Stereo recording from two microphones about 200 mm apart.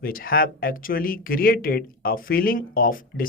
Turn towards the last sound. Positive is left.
turn(degrees=45)  # may be behind; listen again after turning